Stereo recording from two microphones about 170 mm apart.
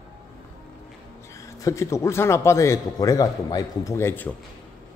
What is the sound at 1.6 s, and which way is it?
A man's voice, 15° left (ahead or behind).